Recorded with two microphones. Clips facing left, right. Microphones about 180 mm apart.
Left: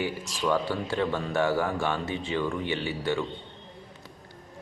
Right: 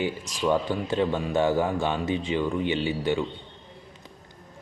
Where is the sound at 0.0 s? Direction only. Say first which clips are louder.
Right 2 dB; 20° right (ahead or behind).